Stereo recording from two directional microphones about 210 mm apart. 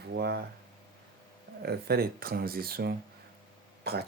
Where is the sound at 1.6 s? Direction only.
50° right (ahead or behind).